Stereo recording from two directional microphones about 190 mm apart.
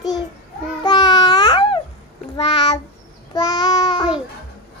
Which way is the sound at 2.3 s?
25° left (ahead or behind).